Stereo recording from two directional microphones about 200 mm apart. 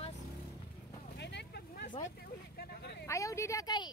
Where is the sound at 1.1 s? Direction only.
60° left (ahead or behind).